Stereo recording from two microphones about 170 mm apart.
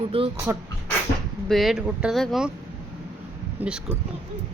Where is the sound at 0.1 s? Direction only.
35° right (ahead or behind).